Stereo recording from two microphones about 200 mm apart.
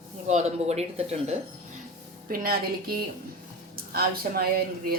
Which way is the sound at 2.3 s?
50° right (ahead or behind).